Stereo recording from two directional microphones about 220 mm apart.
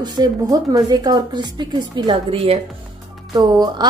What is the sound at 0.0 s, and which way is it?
A woman's voice, 15° right (ahead or behind).